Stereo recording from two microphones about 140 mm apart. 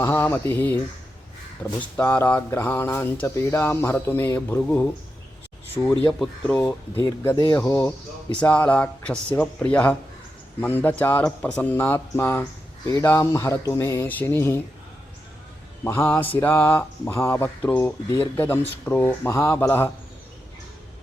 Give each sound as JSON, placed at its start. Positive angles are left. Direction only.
{"t": 0.0, "sound": "speech", "side_deg": 15}
{"t": 6.1, "sound": "speech", "side_deg": 5}
{"t": 6.9, "sound": "speech", "side_deg": 20}
{"t": 15.8, "sound": "speech", "side_deg": 15}